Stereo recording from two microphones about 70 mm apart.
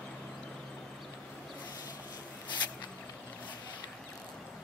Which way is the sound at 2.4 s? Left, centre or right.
Left.